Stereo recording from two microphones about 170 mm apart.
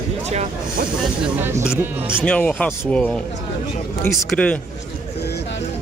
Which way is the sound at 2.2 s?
5° left (ahead or behind).